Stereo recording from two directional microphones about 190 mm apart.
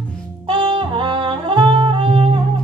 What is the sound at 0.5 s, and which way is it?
Music, 25° right (ahead or behind).